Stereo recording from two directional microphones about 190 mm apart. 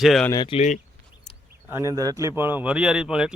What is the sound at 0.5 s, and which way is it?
Speech, 40° left (ahead or behind).